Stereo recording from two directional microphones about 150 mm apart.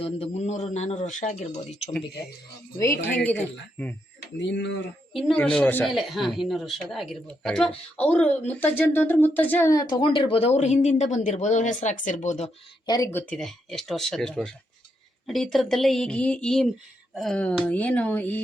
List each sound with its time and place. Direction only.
0.0 s speech: 45° left (ahead or behind)
2.7 s speech: 20° left (ahead or behind)
5.1 s speech: 5° left (ahead or behind); by 10.1 s 25° left (ahead or behind)
10.1 s speech: 35° left (ahead or behind); by 12.5 s 55° left (ahead or behind)
12.8 s speech: 25° left (ahead or behind)
13.1 s speech: 15° left (ahead or behind)
13.4 s speech: centre (ahead or behind)